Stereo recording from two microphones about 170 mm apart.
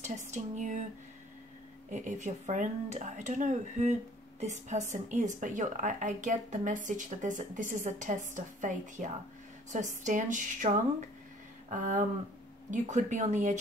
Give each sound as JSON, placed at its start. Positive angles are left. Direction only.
{"t": 0.0, "sound": "a woman's voice", "side_deg": -45}
{"t": 1.9, "sound": "a woman's voice", "side_deg": -45}